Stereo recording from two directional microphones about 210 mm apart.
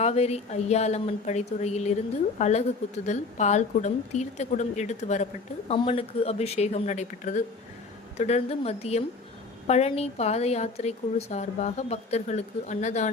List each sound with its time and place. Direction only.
0.0 s a woman's voice: 30° left (ahead or behind)